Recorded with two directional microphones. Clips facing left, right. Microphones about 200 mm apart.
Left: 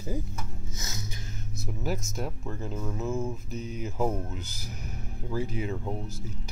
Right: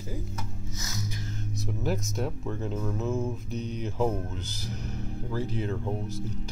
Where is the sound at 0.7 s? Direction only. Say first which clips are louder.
Right 3 dB; 25° left (ahead or behind).